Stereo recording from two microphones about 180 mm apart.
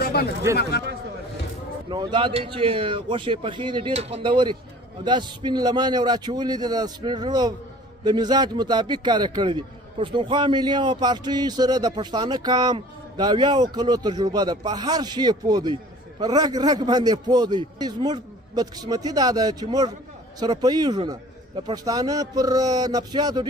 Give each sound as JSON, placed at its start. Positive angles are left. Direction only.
{"t": 0.0, "sound": "chatter", "side_deg": 60}
{"t": 1.9, "sound": "a man's voice", "side_deg": -25}